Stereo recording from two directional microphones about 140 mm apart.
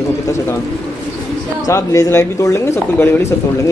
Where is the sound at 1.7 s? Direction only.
20° left (ahead or behind).